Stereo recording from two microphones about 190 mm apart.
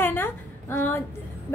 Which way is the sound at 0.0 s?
10° left (ahead or behind).